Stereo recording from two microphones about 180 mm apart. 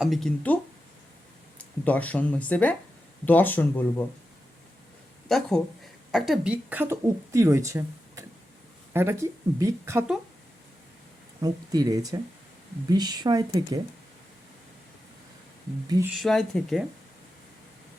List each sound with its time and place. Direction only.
0.0 s speech: centre (ahead or behind)
5.3 s speech: 5° left (ahead or behind); by 10.1 s 15° right (ahead or behind)
11.3 s speech: 20° right (ahead or behind)
16.1 s speech: centre (ahead or behind)